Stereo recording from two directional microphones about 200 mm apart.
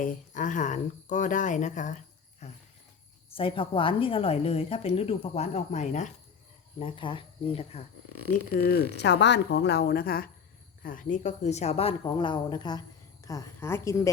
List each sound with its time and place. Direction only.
0.0 s a woman's voice: 40° left (ahead or behind)
6.7 s a woman's voice: 25° left (ahead or behind)
8.4 s speech: 50° left (ahead or behind)
9.0 s a woman's voice: 60° left (ahead or behind); by 14.1 s 15° left (ahead or behind)